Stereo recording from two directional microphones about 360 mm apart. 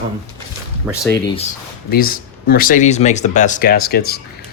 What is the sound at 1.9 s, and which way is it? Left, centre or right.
Speech, left.